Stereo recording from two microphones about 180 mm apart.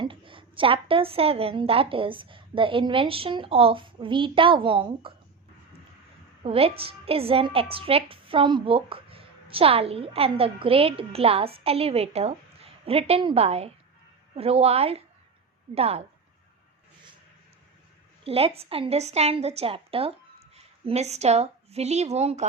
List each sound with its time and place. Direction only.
0.0 s a woman's voice: 30° right (ahead or behind)
6.4 s a woman's voice: 30° right (ahead or behind)
18.3 s a woman's voice: 30° right (ahead or behind)